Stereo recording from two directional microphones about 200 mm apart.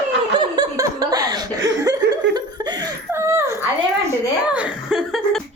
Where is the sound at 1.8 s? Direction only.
20° right (ahead or behind).